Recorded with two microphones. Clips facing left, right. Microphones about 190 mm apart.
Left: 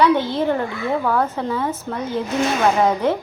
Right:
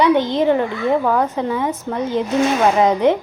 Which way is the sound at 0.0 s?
15° right (ahead or behind).